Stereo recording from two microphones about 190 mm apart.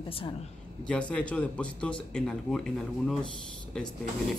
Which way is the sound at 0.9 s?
5° left (ahead or behind).